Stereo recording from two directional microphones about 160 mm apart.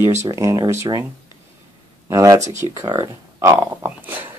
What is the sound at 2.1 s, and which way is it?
Speech, 20° right (ahead or behind).